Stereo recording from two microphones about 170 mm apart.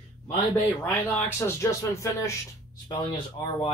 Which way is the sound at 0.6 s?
15° left (ahead or behind).